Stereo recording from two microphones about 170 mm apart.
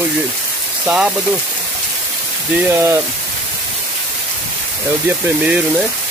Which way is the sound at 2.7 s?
15° right (ahead or behind).